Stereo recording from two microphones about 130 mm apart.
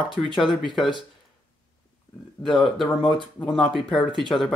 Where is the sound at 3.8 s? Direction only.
40° left (ahead or behind).